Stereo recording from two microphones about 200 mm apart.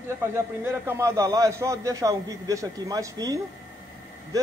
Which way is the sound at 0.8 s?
15° right (ahead or behind).